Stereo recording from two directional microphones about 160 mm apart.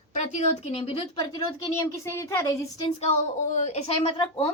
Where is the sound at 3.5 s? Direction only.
45° left (ahead or behind).